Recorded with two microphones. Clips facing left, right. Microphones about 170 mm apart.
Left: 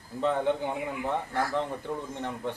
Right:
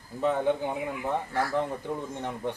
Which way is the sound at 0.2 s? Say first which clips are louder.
Right 1 dB; 10° right (ahead or behind).